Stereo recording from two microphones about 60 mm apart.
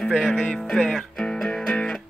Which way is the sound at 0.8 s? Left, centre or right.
Centre.